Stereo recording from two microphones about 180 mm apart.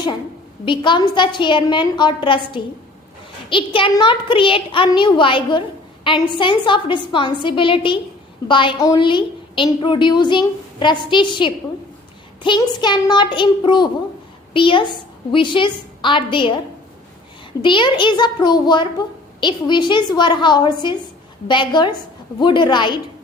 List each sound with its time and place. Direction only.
0.6 s a child's voice: 25° left (ahead or behind)
17.6 s a child's voice: 25° left (ahead or behind)